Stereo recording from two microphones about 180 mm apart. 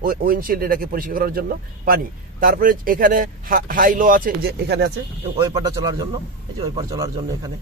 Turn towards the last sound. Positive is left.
turn(degrees=-20)  # may be behind; listen again after turning